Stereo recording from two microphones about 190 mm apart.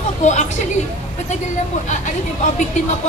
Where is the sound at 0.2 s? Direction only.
40° left (ahead or behind).